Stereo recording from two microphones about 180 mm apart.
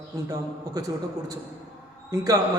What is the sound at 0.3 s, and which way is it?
Speech, 20° right (ahead or behind).